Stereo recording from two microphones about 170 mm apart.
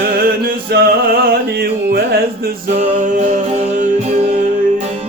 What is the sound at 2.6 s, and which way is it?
Music, 45° right (ahead or behind).